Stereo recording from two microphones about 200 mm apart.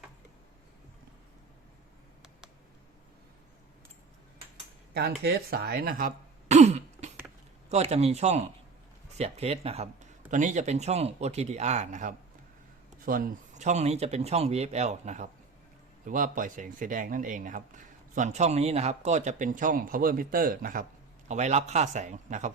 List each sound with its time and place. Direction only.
4.9 s speech: 50° right (ahead or behind)
6.5 s throat clearing: 35° right (ahead or behind)
7.7 s speech: 35° right (ahead or behind)